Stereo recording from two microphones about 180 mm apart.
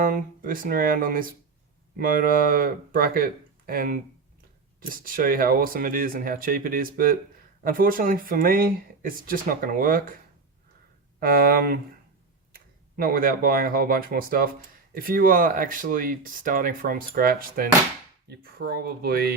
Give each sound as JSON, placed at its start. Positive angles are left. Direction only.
{"t": 0.0, "sound": "speech", "side_deg": -50}
{"t": 11.2, "sound": "speech", "side_deg": -55}